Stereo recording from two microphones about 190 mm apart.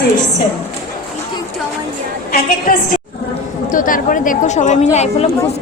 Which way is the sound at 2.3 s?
50° left (ahead or behind).